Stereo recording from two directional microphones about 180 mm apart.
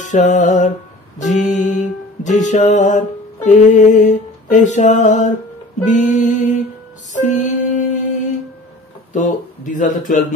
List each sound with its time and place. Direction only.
0.0 s music: 45° left (ahead or behind)